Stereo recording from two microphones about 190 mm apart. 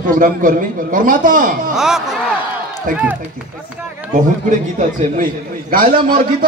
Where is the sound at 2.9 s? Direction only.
45° right (ahead or behind).